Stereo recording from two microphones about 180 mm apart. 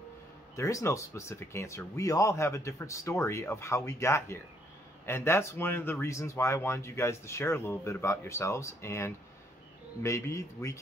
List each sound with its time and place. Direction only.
0.6 s speech: 15° left (ahead or behind)